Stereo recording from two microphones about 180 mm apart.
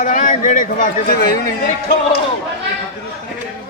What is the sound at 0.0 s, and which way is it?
A man's voice, 45° left (ahead or behind).